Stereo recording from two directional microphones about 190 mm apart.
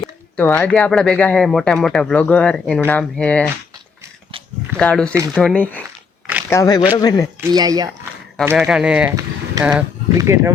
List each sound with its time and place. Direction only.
0.3 s speech: 10° left (ahead or behind)
4.8 s speech: 5° left (ahead or behind)
6.5 s speech: 20° left (ahead or behind)
7.5 s speech: 20° right (ahead or behind)
8.5 s speech: 5° right (ahead or behind)
9.0 s a sound: 15° right (ahead or behind)
10.2 s speech: 15° right (ahead or behind)